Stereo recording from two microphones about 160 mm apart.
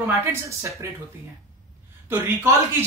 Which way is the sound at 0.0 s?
15° right (ahead or behind).